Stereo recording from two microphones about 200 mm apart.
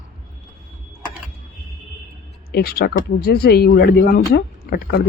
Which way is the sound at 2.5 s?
50° left (ahead or behind).